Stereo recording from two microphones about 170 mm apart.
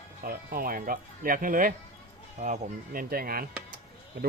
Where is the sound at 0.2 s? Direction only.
60° right (ahead or behind).